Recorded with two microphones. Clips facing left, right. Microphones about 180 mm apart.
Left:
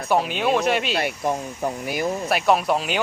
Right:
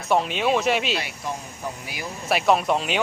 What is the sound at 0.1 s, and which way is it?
Speech, centre (ahead or behind).